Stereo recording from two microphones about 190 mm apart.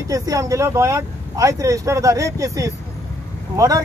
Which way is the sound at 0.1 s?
20° right (ahead or behind).